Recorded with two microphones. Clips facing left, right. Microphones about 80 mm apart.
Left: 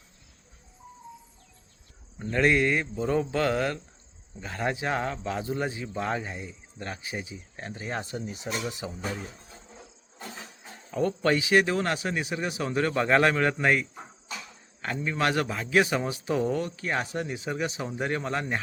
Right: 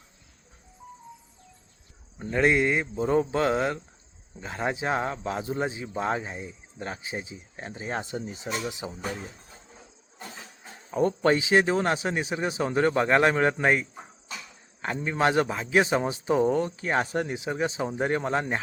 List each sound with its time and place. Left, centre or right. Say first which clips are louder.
2.1 s a man's voice: right 1 dB; centre
10.9 s a man's voice: right 2 dB; right
13.1 s a man's voice: left 2 dB; centre
13.3 s a man's voice: right 1 dB; right
14.9 s a man's voice: right 3 dB; right
17.3 s a man's voice: right 3 dB; right